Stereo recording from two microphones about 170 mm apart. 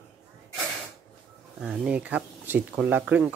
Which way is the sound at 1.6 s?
5° right (ahead or behind).